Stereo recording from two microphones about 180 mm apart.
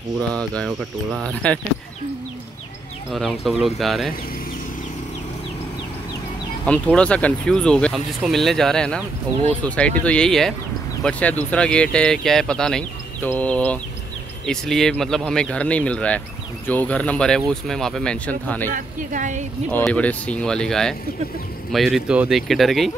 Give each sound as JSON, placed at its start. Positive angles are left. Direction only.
{"t": 0.3, "sound": "speech", "side_deg": 5}
{"t": 3.1, "sound": "speech", "side_deg": 0}
{"t": 6.6, "sound": "speech", "side_deg": 5}
{"t": 18.7, "sound": "a woman's voice", "side_deg": -45}
{"t": 19.8, "sound": "speech", "side_deg": 5}